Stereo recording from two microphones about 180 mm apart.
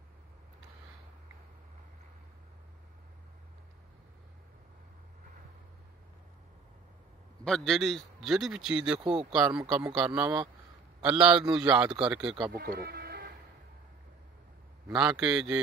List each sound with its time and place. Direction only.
7.4 s a man's voice: 5° left (ahead or behind)
9.0 s speech: 30° right (ahead or behind)
9.3 s a man's voice: 5° right (ahead or behind)
12.5 s bleat: 60° right (ahead or behind)
14.9 s a man's voice: 5° right (ahead or behind)